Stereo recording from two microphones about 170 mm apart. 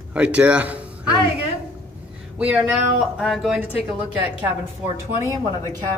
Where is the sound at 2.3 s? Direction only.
5° right (ahead or behind).